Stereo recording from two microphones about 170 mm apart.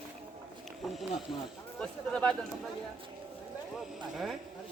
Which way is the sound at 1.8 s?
5° left (ahead or behind).